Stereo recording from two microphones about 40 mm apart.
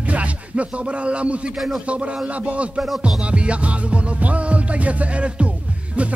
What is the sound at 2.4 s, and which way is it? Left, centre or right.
Music, right.